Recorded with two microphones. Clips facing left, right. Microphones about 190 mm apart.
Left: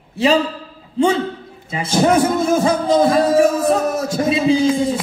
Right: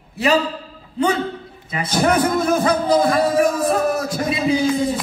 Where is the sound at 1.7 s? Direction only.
25° left (ahead or behind).